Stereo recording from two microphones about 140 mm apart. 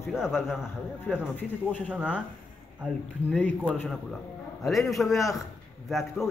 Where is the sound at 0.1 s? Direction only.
5° right (ahead or behind).